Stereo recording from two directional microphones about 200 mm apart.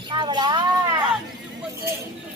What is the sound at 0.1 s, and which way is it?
Speech, 20° right (ahead or behind).